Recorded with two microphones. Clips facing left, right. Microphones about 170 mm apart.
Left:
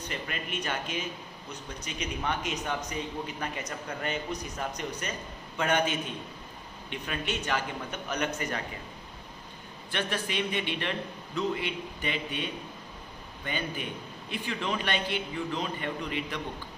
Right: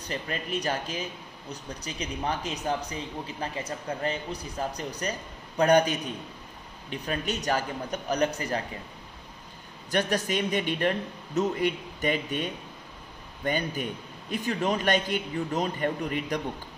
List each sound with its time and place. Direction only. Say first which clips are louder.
0.1 s speech: right 6 dB; 35° right (ahead or behind)
9.8 s a man's voice: right 6 dB; 40° right (ahead or behind)